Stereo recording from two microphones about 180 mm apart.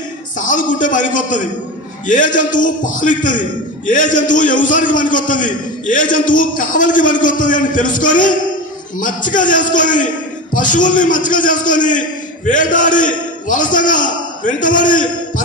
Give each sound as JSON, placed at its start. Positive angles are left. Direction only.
{"t": 0.4, "sound": "a man's voice", "side_deg": 45}